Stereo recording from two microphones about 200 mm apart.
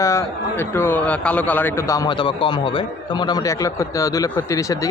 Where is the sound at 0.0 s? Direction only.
15° left (ahead or behind).